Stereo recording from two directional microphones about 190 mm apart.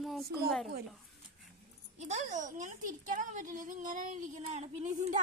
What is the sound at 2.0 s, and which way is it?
Speech, 40° right (ahead or behind).